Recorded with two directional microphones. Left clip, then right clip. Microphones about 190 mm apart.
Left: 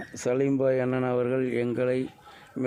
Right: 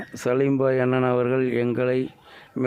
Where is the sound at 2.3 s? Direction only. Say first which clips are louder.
Right 4 dB; 35° right (ahead or behind).